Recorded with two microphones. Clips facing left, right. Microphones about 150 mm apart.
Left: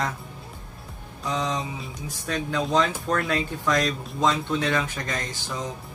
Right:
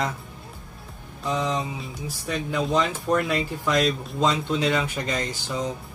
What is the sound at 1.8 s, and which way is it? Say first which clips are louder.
Speech: right 2 dB; 5° right (ahead or behind).